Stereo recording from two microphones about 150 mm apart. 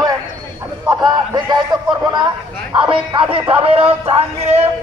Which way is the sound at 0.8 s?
30° right (ahead or behind).